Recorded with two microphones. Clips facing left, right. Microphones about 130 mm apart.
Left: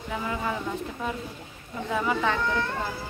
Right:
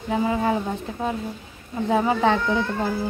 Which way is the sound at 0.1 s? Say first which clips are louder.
Right 9 dB; 30° right (ahead or behind).